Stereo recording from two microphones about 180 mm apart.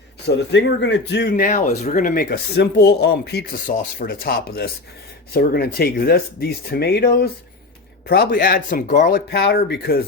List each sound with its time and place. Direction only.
0.3 s speech: 75° left (ahead or behind)
1.3 s speech: 50° left (ahead or behind); by 3.4 s 65° left (ahead or behind)
3.7 s speech: 50° left (ahead or behind)